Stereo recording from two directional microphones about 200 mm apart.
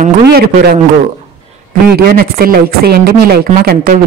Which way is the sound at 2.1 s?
50° right (ahead or behind).